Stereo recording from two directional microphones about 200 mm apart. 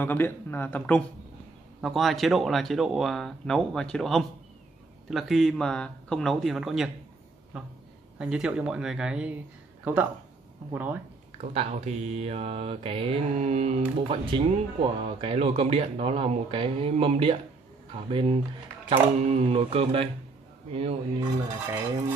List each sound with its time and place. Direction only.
0.0 s speech: 10° left (ahead or behind); by 11.0 s 10° right (ahead or behind)
11.5 s mantra: 30° right (ahead or behind)